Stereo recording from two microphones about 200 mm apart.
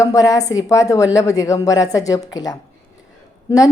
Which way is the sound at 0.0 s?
15° left (ahead or behind).